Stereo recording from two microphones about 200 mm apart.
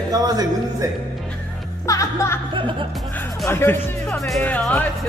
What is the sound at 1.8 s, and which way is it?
Music, 15° left (ahead or behind).